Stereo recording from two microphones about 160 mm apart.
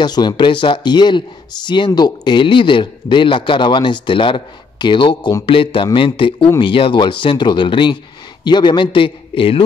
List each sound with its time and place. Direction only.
0.0 s speech: 25° left (ahead or behind)